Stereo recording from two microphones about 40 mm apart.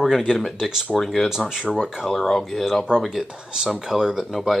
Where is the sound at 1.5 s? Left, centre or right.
Centre.